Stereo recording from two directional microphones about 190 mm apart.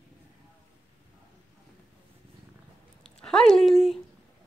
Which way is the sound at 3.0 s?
Centre (ahead or behind).